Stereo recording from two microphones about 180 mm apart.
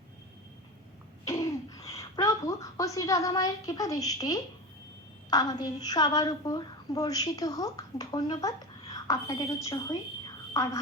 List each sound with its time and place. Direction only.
1.3 s a woman's voice: 20° left (ahead or behind)